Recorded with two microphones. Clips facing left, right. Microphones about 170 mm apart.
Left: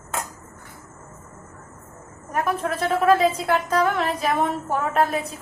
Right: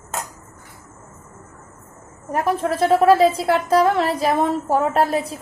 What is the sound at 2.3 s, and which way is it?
A woman's voice, 30° right (ahead or behind).